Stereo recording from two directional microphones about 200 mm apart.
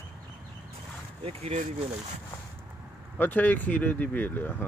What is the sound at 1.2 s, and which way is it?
Speech, 30° right (ahead or behind).